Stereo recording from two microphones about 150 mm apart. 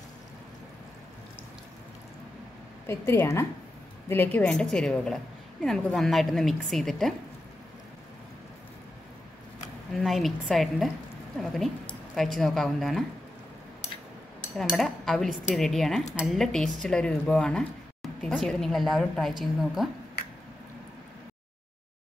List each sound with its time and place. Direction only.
2.9 s a woman's voice: 15° left (ahead or behind)
9.9 s a woman's voice: centre (ahead or behind)
14.6 s a woman's voice: centre (ahead or behind)